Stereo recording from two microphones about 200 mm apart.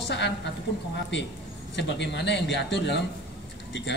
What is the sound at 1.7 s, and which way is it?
A man's voice, 60° left (ahead or behind).